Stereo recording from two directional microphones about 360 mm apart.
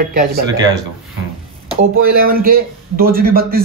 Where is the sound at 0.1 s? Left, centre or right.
Right.